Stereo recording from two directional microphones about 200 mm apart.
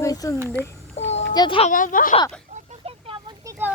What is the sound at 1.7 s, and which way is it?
Speech, 40° left (ahead or behind).